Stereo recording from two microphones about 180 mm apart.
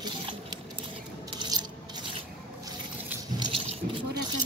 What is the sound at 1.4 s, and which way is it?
Coin, 25° right (ahead or behind).